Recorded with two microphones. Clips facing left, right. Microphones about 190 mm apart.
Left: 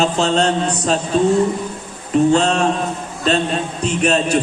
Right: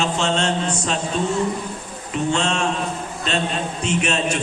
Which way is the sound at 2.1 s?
35° left (ahead or behind).